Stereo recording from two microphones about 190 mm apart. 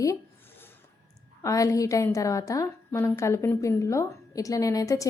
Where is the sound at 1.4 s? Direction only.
15° left (ahead or behind).